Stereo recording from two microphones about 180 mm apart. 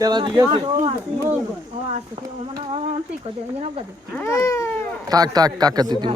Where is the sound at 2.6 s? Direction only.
30° right (ahead or behind).